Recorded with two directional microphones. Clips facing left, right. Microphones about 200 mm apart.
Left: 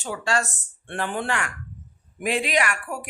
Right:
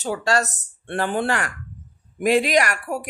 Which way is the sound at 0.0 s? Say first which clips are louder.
Right 4 dB; 40° right (ahead or behind).